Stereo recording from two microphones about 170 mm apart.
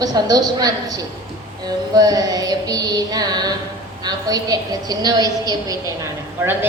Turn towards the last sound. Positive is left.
turn(degrees=-10)  # may be behind; listen again after turning